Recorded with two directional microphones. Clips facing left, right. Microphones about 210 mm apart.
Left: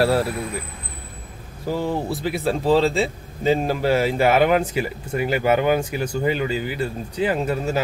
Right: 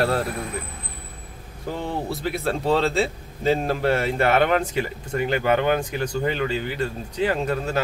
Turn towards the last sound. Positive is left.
turn(degrees=5)  # may be behind; listen again after turning